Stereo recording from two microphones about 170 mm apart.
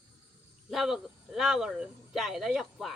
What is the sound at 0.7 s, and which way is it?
Speech, centre (ahead or behind).